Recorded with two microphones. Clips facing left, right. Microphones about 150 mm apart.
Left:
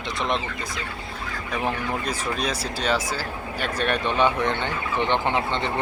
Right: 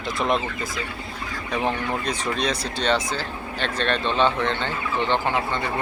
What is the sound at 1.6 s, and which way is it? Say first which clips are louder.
Speech: right 2 dB; 5° left (ahead or behind).